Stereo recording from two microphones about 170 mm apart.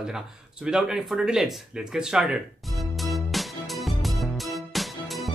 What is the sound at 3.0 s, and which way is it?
Music, centre (ahead or behind).